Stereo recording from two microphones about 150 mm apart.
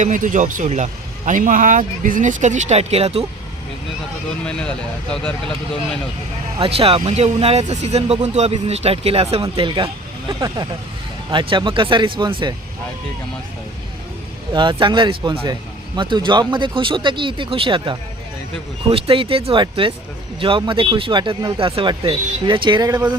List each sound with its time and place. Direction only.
0.0 s speech: 55° right (ahead or behind); by 3.2 s 40° right (ahead or behind)
6.6 s speech: 40° right (ahead or behind)
14.5 s a man's voice: 30° right (ahead or behind)